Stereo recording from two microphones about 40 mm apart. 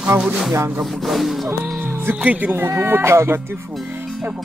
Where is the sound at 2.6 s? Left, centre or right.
Right.